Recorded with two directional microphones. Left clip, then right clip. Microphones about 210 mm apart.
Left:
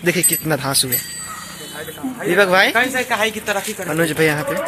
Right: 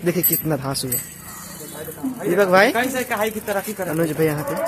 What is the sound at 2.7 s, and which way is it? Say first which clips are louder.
Speech: left 4 dB; 20° right (ahead or behind).